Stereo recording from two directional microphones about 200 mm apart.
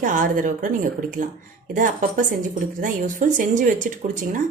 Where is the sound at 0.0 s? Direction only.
40° right (ahead or behind).